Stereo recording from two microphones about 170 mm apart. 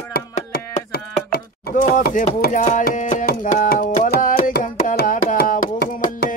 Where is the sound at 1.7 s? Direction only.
55° left (ahead or behind).